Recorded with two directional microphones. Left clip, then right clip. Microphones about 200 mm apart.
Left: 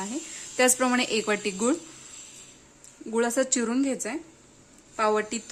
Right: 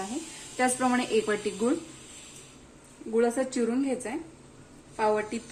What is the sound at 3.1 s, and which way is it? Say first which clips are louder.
Speech: left 1 dB; 60° left (ahead or behind).